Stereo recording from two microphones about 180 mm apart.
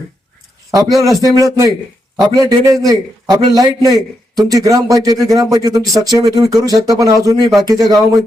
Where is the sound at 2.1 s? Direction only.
20° right (ahead or behind).